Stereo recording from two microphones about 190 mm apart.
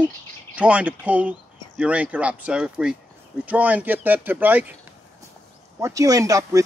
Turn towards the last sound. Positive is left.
turn(degrees=-15)  # may be behind; listen again after turning